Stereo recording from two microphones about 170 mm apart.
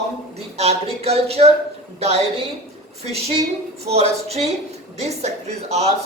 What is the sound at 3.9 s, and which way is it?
A woman's voice, 40° right (ahead or behind).